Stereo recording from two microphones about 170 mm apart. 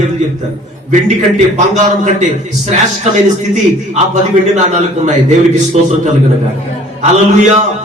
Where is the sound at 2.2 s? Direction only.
45° right (ahead or behind).